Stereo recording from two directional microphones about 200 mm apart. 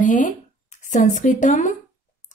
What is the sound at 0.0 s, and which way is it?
A woman's voice, 40° left (ahead or behind).